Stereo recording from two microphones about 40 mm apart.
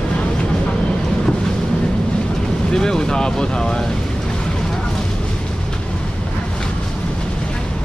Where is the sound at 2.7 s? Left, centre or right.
Centre.